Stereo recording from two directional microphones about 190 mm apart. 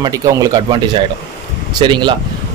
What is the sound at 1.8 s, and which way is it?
Speech, 25° right (ahead or behind).